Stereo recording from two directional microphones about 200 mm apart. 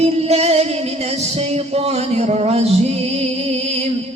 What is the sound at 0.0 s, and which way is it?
Music, 30° right (ahead or behind).